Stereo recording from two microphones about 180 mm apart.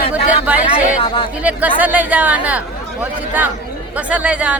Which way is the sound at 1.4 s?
10° right (ahead or behind).